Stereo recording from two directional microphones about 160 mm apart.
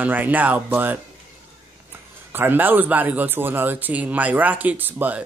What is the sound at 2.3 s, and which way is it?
Speech, 10° right (ahead or behind).